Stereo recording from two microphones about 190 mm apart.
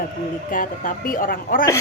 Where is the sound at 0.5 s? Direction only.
45° left (ahead or behind).